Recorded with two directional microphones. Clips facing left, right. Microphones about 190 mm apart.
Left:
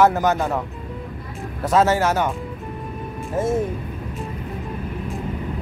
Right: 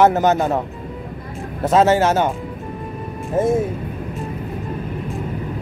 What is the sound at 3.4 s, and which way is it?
Speech, 15° right (ahead or behind).